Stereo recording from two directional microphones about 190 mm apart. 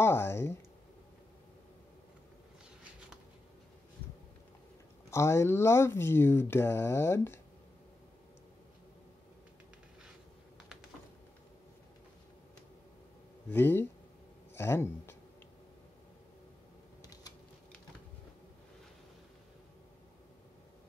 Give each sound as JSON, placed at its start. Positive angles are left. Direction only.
{"t": 0.0, "sound": "speech", "side_deg": 15}
{"t": 5.1, "sound": "speech", "side_deg": 15}
{"t": 13.5, "sound": "speech", "side_deg": 10}
{"t": 17.0, "sound": "a sound", "side_deg": 20}